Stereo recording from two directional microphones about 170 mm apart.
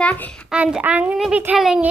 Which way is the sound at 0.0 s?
10° left (ahead or behind).